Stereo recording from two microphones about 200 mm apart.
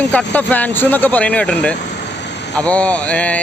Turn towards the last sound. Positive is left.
turn(degrees=5)  # may be behind; listen again after turning